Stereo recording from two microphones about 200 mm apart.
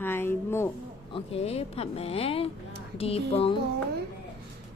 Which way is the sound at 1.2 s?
30° left (ahead or behind).